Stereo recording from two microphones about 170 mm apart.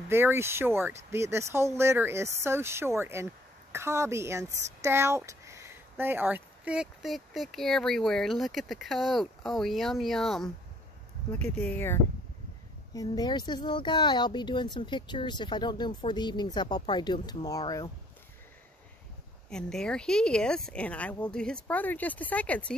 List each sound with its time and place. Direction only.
0.1 s speech: 15° right (ahead or behind); by 10.5 s centre (ahead or behind)
11.5 s speech: 10° left (ahead or behind)
19.5 s speech: 5° left (ahead or behind)